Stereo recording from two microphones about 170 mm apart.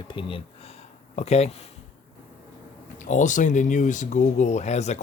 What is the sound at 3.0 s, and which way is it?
Speech, 45° left (ahead or behind).